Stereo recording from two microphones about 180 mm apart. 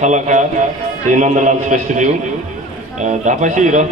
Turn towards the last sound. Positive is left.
turn(degrees=-40)  # may be behind; listen again after turning